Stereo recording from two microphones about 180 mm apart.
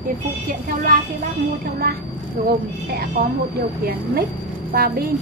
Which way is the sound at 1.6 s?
60° right (ahead or behind).